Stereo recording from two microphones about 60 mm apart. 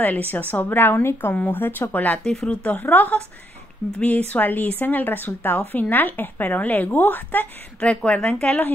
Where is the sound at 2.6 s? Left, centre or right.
Left.